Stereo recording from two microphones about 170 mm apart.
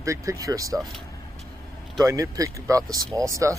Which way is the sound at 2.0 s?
20° right (ahead or behind).